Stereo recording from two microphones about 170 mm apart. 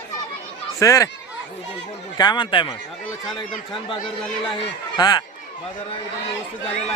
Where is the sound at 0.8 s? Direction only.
20° left (ahead or behind).